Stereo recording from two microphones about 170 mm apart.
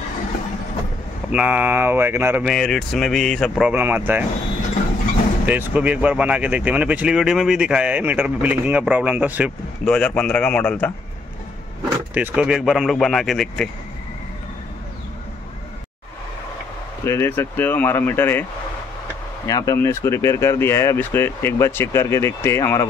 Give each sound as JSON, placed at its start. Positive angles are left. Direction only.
{"t": 1.3, "sound": "speech", "side_deg": -10}
{"t": 2.5, "sound": "speech", "side_deg": 0}
{"t": 5.5, "sound": "speech", "side_deg": -10}
{"t": 9.8, "sound": "speech", "side_deg": 5}
{"t": 12.1, "sound": "speech", "side_deg": -10}
{"t": 17.0, "sound": "speech", "side_deg": 15}
{"t": 19.4, "sound": "speech", "side_deg": 20}